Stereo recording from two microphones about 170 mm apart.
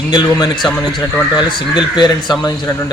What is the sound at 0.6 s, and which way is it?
Speech, 5° left (ahead or behind).